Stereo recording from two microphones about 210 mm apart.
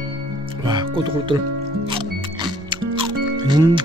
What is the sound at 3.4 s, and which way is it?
Speech, 20° right (ahead or behind).